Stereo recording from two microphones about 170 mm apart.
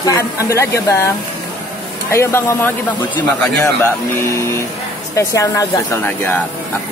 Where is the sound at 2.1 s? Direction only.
15° left (ahead or behind).